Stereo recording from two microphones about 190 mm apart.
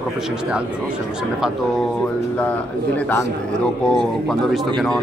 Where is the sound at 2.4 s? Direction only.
5° left (ahead or behind).